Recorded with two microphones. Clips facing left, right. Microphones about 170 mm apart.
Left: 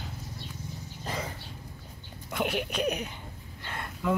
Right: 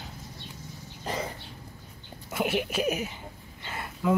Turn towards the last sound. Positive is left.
turn(degrees=-5)  # may be behind; listen again after turning